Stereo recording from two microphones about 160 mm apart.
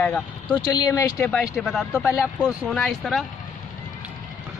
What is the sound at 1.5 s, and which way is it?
Speech, centre (ahead or behind).